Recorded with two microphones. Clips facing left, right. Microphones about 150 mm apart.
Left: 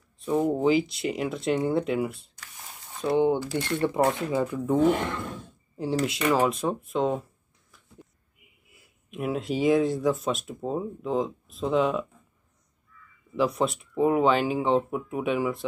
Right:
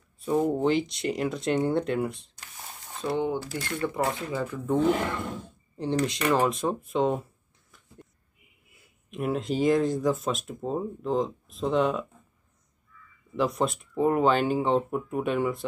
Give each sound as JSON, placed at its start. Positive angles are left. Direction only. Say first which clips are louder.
{"t": 0.2, "sound": "speech", "louder": "left 1 dB", "side_deg": 0}
{"t": 3.0, "sound": "speech", "louder": "left 5 dB", "side_deg": 20}
{"t": 9.1, "sound": "speech", "louder": "even", "side_deg": 0}
{"t": 13.4, "sound": "speech", "louder": "left 1 dB", "side_deg": 0}